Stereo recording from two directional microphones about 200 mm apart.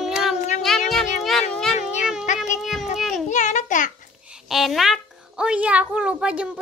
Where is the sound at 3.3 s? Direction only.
40° left (ahead or behind).